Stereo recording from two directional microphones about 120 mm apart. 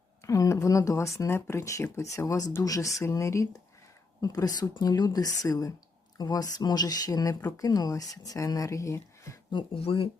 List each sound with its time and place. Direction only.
0.3 s speech: 25° left (ahead or behind)
9.7 s speech: 50° left (ahead or behind)